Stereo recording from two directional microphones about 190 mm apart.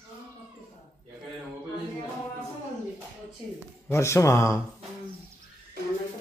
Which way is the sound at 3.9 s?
15° left (ahead or behind).